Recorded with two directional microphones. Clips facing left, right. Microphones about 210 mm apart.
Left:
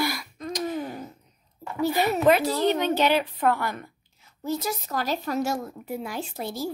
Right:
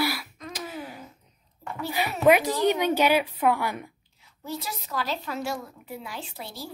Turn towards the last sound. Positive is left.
turn(degrees=45)  # may be behind; listen again after turning